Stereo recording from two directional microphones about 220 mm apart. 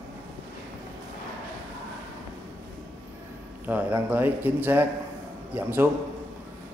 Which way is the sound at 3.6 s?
10° right (ahead or behind).